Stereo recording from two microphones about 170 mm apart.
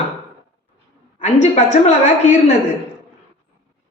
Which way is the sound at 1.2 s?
45° left (ahead or behind).